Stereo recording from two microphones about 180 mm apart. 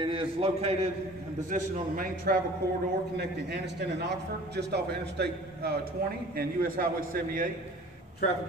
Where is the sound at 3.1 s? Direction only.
65° right (ahead or behind).